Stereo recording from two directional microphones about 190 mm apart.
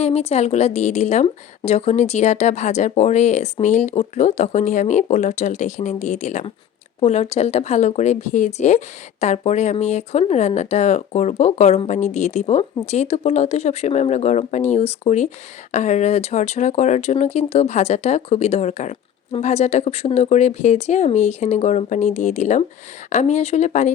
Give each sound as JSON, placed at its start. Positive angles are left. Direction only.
{"t": 0.0, "sound": "speech", "side_deg": 30}